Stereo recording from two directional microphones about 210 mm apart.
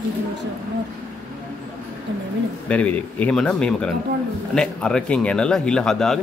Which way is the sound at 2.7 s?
5° left (ahead or behind).